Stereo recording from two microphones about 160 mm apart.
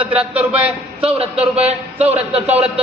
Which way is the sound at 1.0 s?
40° right (ahead or behind).